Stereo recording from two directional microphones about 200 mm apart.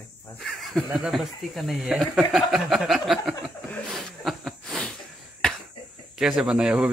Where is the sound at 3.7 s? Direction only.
Centre (ahead or behind).